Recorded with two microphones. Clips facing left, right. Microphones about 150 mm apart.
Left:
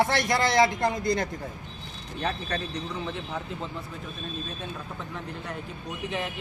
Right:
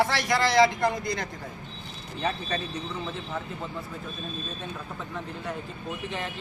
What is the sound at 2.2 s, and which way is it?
Speech, 5° right (ahead or behind).